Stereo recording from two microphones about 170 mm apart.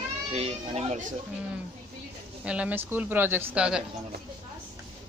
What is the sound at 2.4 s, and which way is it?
A woman's voice, 5° right (ahead or behind).